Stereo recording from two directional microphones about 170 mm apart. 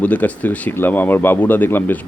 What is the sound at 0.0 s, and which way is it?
Speech, 10° left (ahead or behind).